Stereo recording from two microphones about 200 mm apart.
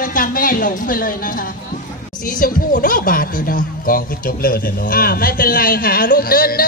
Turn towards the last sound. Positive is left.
turn(degrees=50)  # may be behind; listen again after turning